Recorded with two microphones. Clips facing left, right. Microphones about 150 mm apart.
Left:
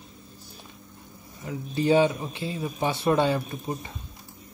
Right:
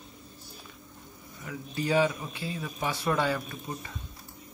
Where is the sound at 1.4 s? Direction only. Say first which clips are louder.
Left 6 dB; 25° left (ahead or behind).